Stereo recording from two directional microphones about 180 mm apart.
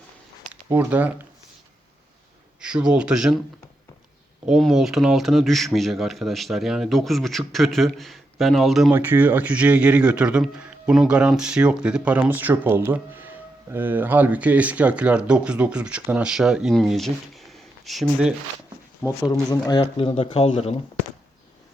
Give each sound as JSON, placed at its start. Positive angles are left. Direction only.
{"t": 0.7, "sound": "a man's voice", "side_deg": -10}
{"t": 2.6, "sound": "speech", "side_deg": -5}
{"t": 4.4, "sound": "a man's voice", "side_deg": 0}
{"t": 19.0, "sound": "speech", "side_deg": 20}